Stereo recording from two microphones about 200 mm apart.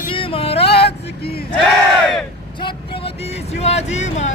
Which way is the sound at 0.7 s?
55° left (ahead or behind).